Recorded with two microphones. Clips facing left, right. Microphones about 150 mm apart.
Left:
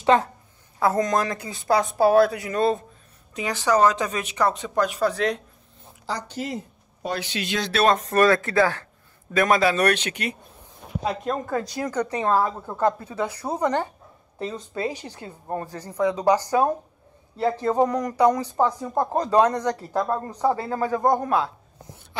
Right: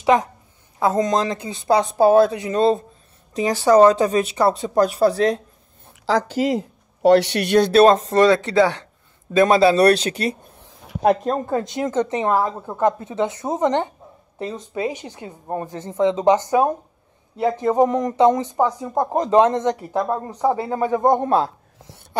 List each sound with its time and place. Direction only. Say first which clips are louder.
0.0 s a woman's voice: right 2 dB; 15° right (ahead or behind); by 5.4 s 35° right (ahead or behind)
6.0 s speech: right 11 dB; 90° right; by 7.6 s 70° right (ahead or behind)
7.7 s a woman's voice: right 5 dB; 30° right (ahead or behind)